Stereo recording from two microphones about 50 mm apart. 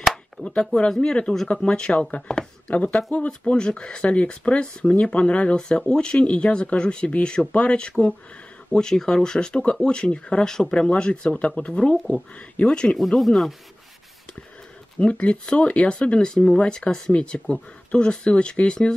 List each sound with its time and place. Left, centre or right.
0.4 s a sound: left
1.0 s speech: centre
12.9 s speech: centre
15.0 s speech: left